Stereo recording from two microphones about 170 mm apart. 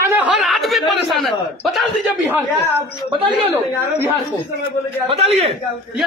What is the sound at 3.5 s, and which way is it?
Speech, 10° right (ahead or behind).